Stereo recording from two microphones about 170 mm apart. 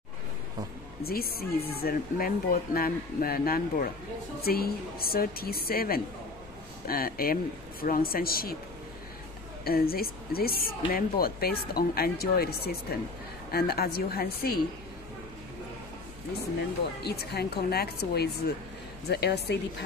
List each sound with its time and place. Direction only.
1.0 s speech: 65° left (ahead or behind)
9.7 s speech: 60° left (ahead or behind)
17.0 s a woman's voice: 70° left (ahead or behind)